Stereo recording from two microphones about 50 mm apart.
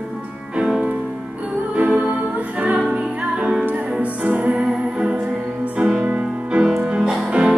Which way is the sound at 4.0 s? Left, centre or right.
Right.